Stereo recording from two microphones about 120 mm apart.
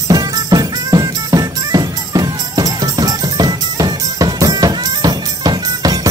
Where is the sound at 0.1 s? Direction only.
30° right (ahead or behind).